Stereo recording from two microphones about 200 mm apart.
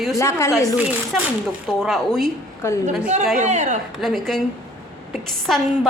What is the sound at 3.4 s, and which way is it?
Speech, 35° right (ahead or behind).